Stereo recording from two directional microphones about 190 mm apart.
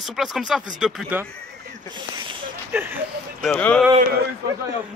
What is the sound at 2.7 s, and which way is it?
Speech, 10° right (ahead or behind).